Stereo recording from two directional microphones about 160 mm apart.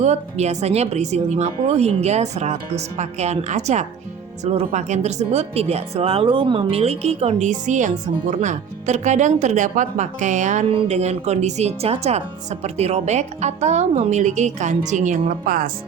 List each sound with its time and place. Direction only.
0.0 s speech: 45° right (ahead or behind); by 15.7 s 65° right (ahead or behind)